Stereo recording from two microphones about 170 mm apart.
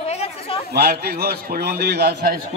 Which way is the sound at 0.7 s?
70° right (ahead or behind).